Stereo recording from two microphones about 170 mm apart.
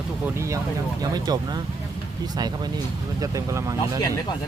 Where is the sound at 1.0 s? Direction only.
25° right (ahead or behind).